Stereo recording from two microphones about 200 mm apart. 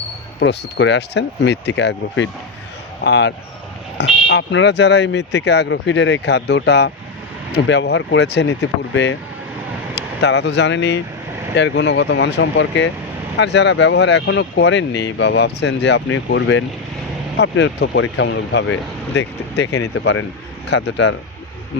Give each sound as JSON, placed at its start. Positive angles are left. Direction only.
{"t": 0.3, "sound": "speech", "side_deg": 60}
{"t": 17.3, "sound": "speech", "side_deg": 60}